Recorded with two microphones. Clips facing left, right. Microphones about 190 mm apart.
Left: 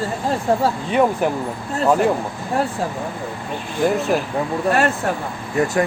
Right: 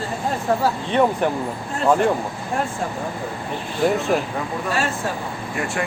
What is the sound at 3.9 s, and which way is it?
Speech, centre (ahead or behind).